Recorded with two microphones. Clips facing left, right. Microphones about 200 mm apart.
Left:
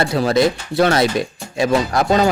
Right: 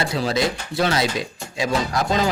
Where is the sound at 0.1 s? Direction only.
55° left (ahead or behind).